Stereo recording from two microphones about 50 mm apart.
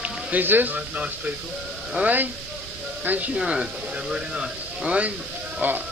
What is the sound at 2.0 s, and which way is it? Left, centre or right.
Speech, right.